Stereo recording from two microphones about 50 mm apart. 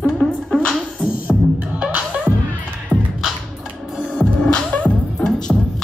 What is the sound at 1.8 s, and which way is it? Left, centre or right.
Music, right.